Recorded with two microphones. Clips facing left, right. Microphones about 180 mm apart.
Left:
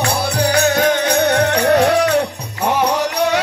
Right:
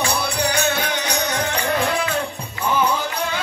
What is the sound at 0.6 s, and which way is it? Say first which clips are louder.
Music: left 8 dB; 45° left (ahead or behind).